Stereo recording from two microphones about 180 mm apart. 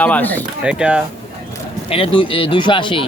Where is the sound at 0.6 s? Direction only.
5° right (ahead or behind).